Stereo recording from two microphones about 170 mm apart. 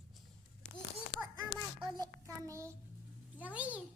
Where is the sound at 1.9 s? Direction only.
20° right (ahead or behind).